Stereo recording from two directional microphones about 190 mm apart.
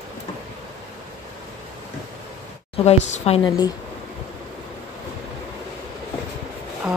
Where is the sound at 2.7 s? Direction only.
35° left (ahead or behind).